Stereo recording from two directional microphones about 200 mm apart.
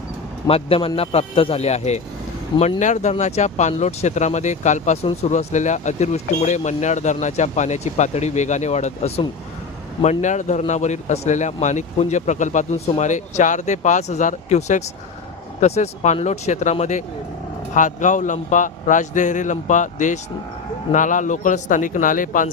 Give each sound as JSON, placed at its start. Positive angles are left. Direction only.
{"t": 0.4, "sound": "a man's voice", "side_deg": 30}